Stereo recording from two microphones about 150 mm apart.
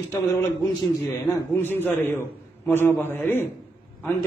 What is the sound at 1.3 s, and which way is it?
A man's voice, 15° left (ahead or behind).